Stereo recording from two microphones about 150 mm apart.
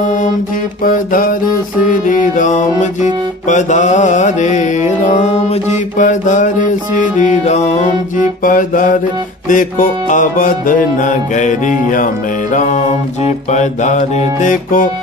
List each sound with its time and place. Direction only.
0.0 s music: 55° left (ahead or behind)
0.8 s a sound: 70° left (ahead or behind)
2.0 s music: 60° left (ahead or behind)
3.4 s mantra: 55° left (ahead or behind)
8.5 s music: 65° left (ahead or behind)
12.5 s mantra: 55° left (ahead or behind)